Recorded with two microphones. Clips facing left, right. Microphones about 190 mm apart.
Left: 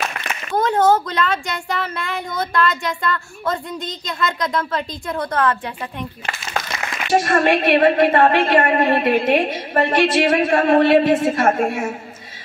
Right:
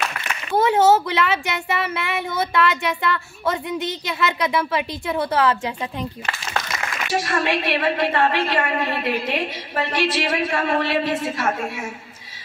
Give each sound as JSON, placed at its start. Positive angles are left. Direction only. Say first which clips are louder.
{"t": 0.6, "sound": "speech", "louder": "even", "side_deg": -5}
{"t": 7.1, "sound": "a woman's voice", "louder": "left 7 dB", "side_deg": 50}